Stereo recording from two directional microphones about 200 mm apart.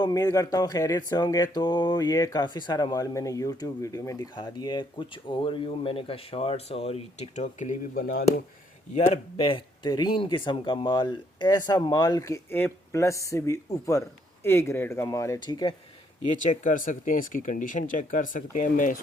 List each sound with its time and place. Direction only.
0.0 s speech: 20° left (ahead or behind); by 8.2 s 45° left (ahead or behind)
9.0 s speech: 30° left (ahead or behind)
16.5 s speech: 40° left (ahead or behind)